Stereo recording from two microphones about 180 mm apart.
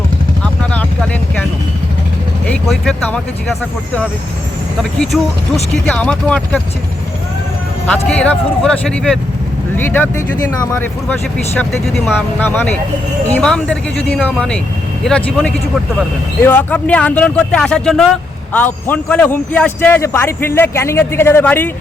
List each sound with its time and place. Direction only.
0.4 s vehicle: 5° left (ahead or behind)
2.5 s speech: 5° left (ahead or behind)
4.8 s speech: centre (ahead or behind)
7.9 s a man's voice: 5° left (ahead or behind)